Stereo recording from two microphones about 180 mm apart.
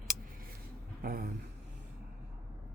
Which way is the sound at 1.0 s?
55° right (ahead or behind).